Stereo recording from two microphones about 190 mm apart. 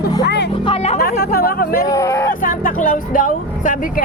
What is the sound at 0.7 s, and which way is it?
Speech, 35° left (ahead or behind).